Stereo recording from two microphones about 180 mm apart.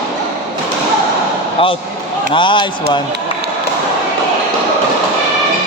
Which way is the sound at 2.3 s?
25° left (ahead or behind).